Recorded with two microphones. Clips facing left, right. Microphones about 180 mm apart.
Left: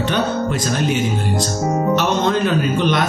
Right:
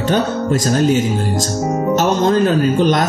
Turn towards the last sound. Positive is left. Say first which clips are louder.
# right 4 dB
turn(degrees=-40)  # may be behind; listen again after turning